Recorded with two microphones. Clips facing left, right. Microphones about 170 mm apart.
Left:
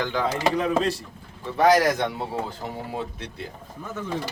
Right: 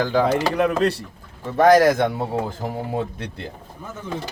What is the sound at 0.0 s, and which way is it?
Speech, 35° right (ahead or behind).